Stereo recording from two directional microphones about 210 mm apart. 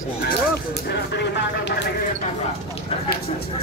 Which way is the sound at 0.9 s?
55° left (ahead or behind).